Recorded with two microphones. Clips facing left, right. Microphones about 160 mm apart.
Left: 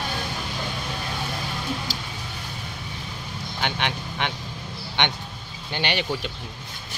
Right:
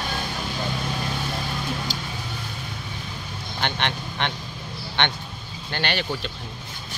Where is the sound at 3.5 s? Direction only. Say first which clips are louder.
Right 1 dB; 10° left (ahead or behind).